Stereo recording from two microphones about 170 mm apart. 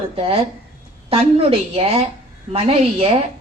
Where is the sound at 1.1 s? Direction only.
35° right (ahead or behind).